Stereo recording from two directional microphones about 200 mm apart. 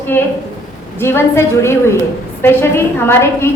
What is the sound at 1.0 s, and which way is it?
A woman's voice, 10° left (ahead or behind).